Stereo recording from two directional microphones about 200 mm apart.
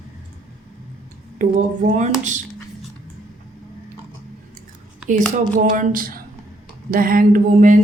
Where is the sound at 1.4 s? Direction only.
35° right (ahead or behind).